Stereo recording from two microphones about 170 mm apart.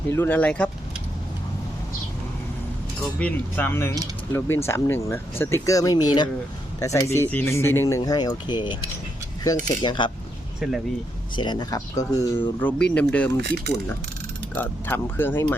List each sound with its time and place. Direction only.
0.1 s speech: 10° left (ahead or behind)
3.2 s speech: 10° left (ahead or behind); by 8.8 s 25° left (ahead or behind)
9.8 s speech: 30° left (ahead or behind)
10.6 s speech: centre (ahead or behind)
11.3 s speech: 25° left (ahead or behind)
12.5 s speech: 10° left (ahead or behind)
13.3 s speech: 75° right (ahead or behind)
14.5 s speech: 10° left (ahead or behind)